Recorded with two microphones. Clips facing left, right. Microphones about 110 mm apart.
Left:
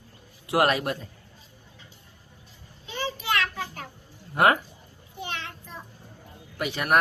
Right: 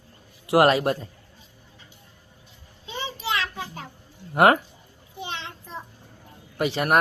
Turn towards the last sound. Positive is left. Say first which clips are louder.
# right 2 dB
turn(degrees=-30)  # may be behind; listen again after turning